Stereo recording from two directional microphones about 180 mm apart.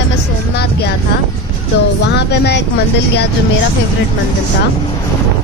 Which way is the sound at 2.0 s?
70° left (ahead or behind).